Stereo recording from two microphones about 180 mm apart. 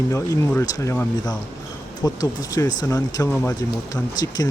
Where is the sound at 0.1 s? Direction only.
15° left (ahead or behind).